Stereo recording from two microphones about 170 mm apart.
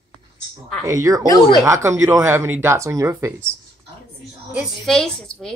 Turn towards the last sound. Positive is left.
turn(degrees=5)  # may be behind; listen again after turning